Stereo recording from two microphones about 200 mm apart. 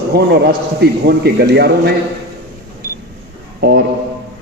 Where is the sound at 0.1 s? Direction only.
55° right (ahead or behind).